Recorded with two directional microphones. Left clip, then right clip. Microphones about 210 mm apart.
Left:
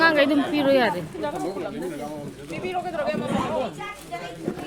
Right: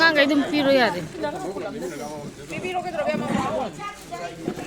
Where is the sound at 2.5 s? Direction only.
15° right (ahead or behind).